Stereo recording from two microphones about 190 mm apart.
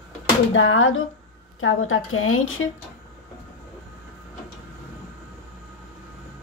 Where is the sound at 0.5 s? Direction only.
90° left.